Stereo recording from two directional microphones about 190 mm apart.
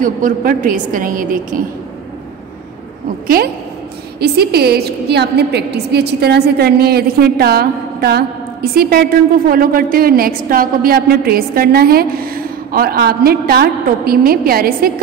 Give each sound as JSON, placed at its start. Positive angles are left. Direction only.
{"t": 0.0, "sound": "a woman's voice", "side_deg": -45}
{"t": 4.2, "sound": "a woman's voice", "side_deg": -55}